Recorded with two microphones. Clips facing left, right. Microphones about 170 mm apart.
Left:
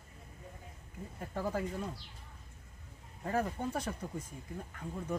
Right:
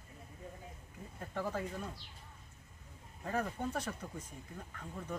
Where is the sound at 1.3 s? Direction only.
15° left (ahead or behind).